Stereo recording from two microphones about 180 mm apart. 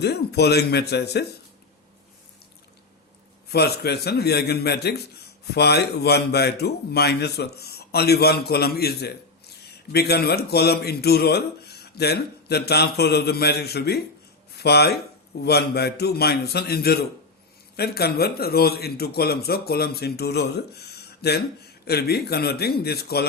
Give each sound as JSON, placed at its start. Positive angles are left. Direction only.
{"t": 0.0, "sound": "a man's voice", "side_deg": 65}
{"t": 3.5, "sound": "a man's voice", "side_deg": 65}